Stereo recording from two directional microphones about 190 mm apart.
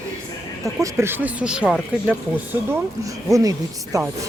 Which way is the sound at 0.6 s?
15° right (ahead or behind).